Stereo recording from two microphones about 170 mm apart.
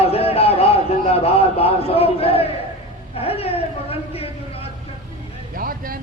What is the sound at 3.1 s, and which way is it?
A man's voice, 35° left (ahead or behind).